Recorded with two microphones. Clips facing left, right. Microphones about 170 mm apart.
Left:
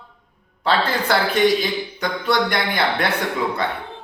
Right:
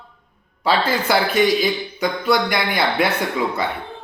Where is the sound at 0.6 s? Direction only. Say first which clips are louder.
Right 1 dB; 10° right (ahead or behind).